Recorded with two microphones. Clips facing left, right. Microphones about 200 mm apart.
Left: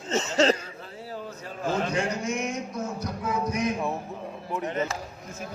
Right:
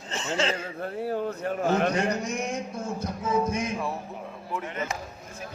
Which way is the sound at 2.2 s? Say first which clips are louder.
Left 1 dB; 35° right (ahead or behind).